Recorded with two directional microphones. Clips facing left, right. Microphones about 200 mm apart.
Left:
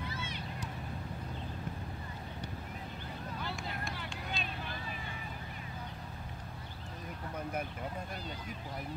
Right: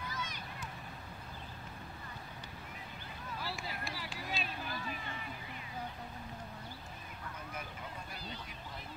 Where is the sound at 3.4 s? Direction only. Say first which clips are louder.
Even; 5° right (ahead or behind).